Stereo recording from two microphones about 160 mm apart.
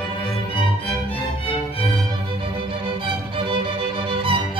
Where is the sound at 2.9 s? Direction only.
35° right (ahead or behind).